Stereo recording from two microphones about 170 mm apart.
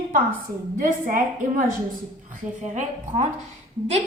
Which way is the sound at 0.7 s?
50° right (ahead or behind).